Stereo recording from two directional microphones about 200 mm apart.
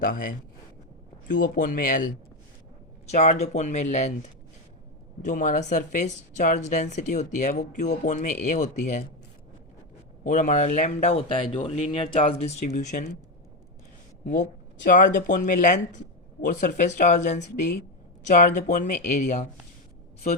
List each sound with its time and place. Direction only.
0.0 s a man's voice: 45° left (ahead or behind)
3.1 s speech: 35° left (ahead or behind)
5.2 s speech: 40° left (ahead or behind)
10.2 s speech: 40° left (ahead or behind)
14.8 s speech: 40° left (ahead or behind)